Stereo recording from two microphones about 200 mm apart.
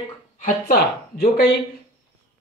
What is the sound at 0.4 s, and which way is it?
Speech, 45° left (ahead or behind).